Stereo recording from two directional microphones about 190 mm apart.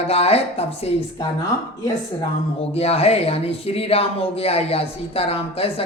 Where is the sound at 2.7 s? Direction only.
30° left (ahead or behind).